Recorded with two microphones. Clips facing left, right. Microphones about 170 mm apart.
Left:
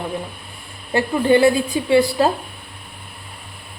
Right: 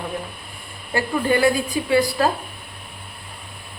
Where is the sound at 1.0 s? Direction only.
25° left (ahead or behind).